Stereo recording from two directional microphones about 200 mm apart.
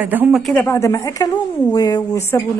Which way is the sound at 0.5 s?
15° left (ahead or behind).